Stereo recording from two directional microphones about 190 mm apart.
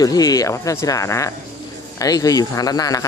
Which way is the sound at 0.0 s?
20° left (ahead or behind).